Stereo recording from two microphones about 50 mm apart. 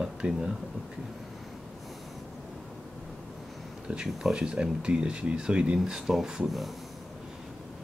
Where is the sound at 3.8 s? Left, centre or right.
Centre.